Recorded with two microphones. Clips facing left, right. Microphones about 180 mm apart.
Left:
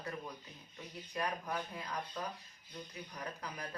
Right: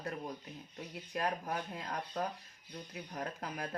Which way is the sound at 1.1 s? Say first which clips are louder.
Right 2 dB; 45° right (ahead or behind).